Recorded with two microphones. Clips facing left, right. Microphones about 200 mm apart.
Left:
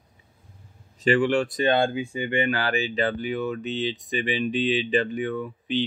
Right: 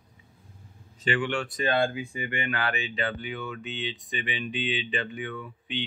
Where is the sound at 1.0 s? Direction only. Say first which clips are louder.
Left 7 dB; 40° left (ahead or behind).